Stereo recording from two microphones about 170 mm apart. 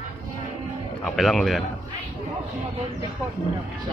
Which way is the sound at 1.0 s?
Centre (ahead or behind).